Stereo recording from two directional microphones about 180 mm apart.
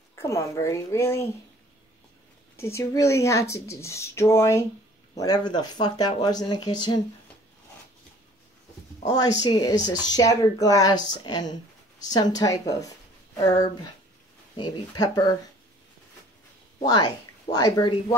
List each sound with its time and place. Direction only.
0.1 s speech: 15° left (ahead or behind)
2.5 s speech: 15° left (ahead or behind)
9.4 s speech: 20° left (ahead or behind)
16.8 s speech: 20° left (ahead or behind)